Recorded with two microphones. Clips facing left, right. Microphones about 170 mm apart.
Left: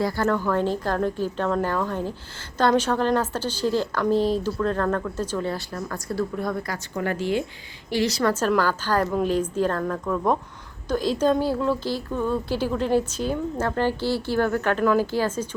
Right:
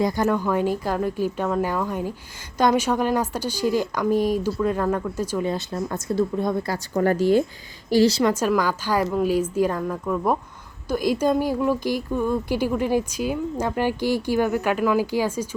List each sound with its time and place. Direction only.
0.0 s a woman's voice: 20° right (ahead or behind); by 8.2 s 35° right (ahead or behind)
8.2 s a woman's voice: 10° right (ahead or behind)